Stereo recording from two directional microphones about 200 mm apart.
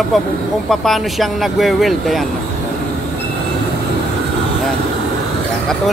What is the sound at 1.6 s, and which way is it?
Speech, centre (ahead or behind).